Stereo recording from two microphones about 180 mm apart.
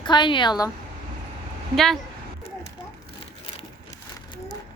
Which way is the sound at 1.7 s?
Centre (ahead or behind).